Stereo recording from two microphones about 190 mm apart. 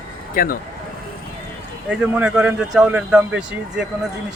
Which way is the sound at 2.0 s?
5° right (ahead or behind).